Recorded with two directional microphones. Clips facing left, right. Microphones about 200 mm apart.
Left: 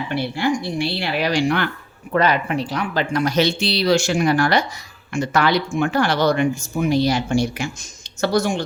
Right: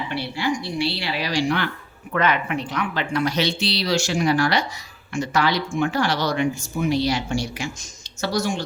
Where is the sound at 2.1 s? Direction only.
35° left (ahead or behind).